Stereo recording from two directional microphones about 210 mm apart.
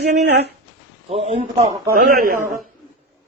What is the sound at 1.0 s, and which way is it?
Speech, 30° right (ahead or behind).